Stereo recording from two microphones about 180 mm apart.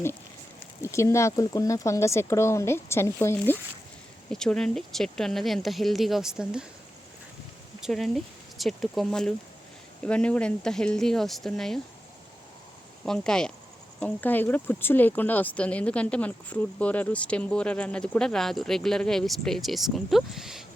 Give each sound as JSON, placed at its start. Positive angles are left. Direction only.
{"t": 0.8, "sound": "speech", "side_deg": 15}
{"t": 7.8, "sound": "speech", "side_deg": 0}
{"t": 13.1, "sound": "speech", "side_deg": 5}